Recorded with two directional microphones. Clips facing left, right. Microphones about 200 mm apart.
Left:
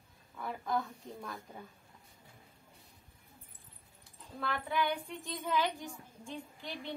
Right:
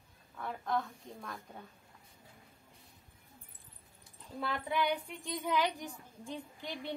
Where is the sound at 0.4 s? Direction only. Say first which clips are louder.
Even; centre (ahead or behind).